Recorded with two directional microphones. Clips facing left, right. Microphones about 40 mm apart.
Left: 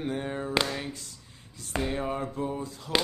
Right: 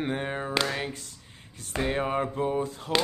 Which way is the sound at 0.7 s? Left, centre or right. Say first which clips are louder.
Right 3 dB; right.